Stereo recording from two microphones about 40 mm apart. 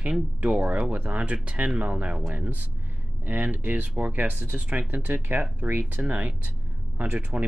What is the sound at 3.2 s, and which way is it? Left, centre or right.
Speech, right.